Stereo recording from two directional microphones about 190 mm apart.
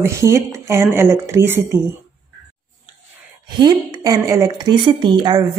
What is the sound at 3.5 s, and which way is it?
A woman's voice, 25° right (ahead or behind).